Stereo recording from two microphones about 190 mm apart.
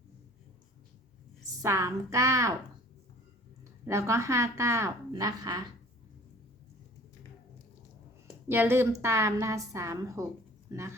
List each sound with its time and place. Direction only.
1.6 s a woman's voice: 15° right (ahead or behind)
3.6 s a woman's voice: 15° right (ahead or behind)
8.4 s a woman's voice: 10° right (ahead or behind)